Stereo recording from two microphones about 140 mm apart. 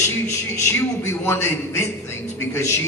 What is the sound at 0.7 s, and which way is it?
A man's voice, 15° left (ahead or behind).